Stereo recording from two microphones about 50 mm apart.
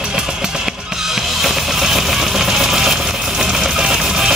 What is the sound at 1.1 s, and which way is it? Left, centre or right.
Music, centre.